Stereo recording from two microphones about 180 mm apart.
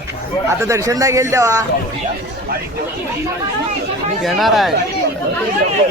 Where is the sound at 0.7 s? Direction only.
15° right (ahead or behind).